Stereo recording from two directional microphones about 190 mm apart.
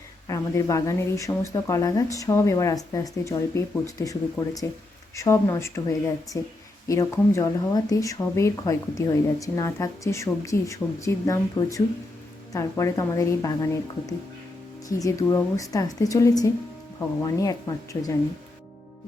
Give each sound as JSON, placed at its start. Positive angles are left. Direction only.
{"t": 0.3, "sound": "speech", "side_deg": 15}
{"t": 14.8, "sound": "speech", "side_deg": 20}